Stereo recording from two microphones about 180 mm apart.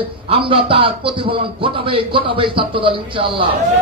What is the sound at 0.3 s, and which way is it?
A man's voice, 30° right (ahead or behind).